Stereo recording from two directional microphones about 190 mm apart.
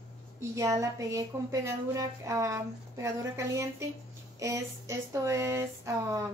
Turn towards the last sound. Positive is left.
turn(degrees=-15)  # may be behind; listen again after turning